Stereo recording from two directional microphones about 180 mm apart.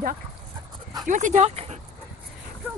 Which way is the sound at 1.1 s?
45° right (ahead or behind).